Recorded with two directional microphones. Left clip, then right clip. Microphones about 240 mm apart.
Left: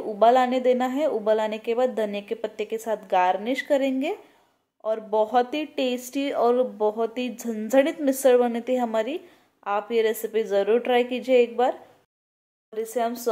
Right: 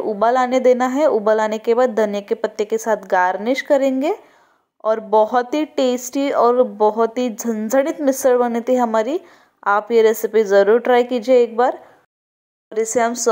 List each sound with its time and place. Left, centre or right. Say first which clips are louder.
0.0 s speech: right 2 dB; right
12.7 s speech: right 9 dB; right